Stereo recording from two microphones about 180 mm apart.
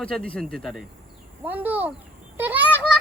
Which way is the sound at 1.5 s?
10° right (ahead or behind).